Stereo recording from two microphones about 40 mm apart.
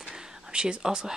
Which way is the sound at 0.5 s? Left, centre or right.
Right.